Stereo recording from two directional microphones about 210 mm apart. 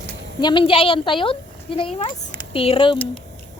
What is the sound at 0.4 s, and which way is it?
A child's voice, 25° left (ahead or behind).